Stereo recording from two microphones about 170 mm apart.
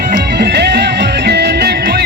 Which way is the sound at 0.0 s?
70° right (ahead or behind).